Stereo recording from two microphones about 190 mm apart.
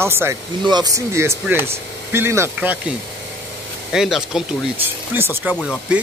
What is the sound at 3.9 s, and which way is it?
Speech, centre (ahead or behind).